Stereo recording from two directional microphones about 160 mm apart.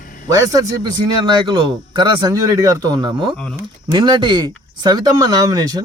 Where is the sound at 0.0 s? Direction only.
60° left (ahead or behind).